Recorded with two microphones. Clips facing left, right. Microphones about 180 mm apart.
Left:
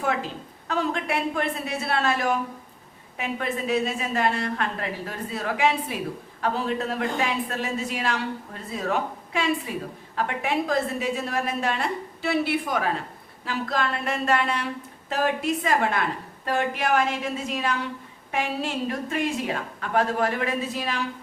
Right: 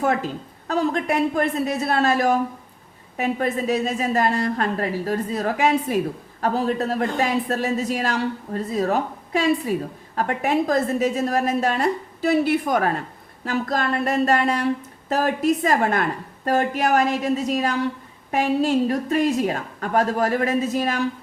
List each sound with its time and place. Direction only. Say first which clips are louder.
0.0 s a woman's voice: right 5 dB; 45° right (ahead or behind)